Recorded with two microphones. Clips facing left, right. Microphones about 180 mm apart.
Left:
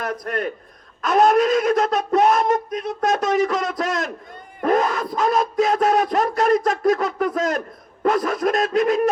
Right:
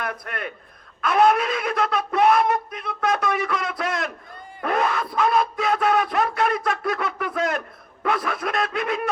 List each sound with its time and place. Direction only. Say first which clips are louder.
0.0 s speech: left 6 dB; 40° left (ahead or behind)
4.6 s a sound: left 4 dB; 40° left (ahead or behind)
8.0 s speech: left 6 dB; 40° left (ahead or behind)